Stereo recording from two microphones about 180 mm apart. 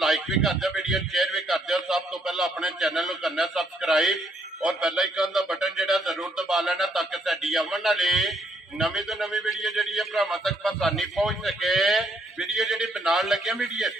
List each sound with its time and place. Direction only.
0.0 s a man's voice: centre (ahead or behind)